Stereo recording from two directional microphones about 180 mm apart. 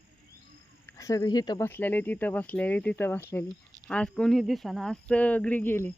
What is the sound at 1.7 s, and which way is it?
Speech, 10° left (ahead or behind).